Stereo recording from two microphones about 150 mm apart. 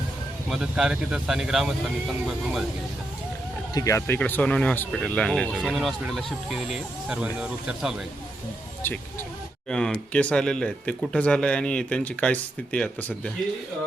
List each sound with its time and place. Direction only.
0.5 s speech: 5° right (ahead or behind)
3.8 s speech: 20° left (ahead or behind); by 8.0 s 5° right (ahead or behind)
8.8 s speech: 15° left (ahead or behind)